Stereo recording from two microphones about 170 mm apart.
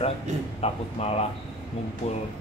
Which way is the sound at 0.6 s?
35° left (ahead or behind).